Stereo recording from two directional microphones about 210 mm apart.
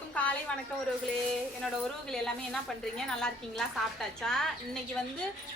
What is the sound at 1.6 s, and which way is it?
A woman's voice, centre (ahead or behind).